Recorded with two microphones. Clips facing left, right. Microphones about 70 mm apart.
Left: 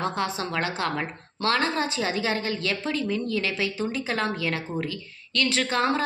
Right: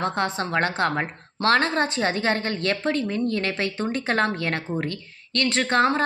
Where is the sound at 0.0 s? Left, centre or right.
Right.